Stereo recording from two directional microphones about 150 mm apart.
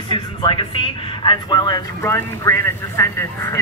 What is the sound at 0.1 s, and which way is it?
Speech, 35° left (ahead or behind).